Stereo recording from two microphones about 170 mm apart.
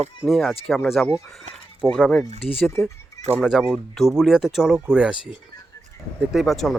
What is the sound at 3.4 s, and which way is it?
Speech, centre (ahead or behind).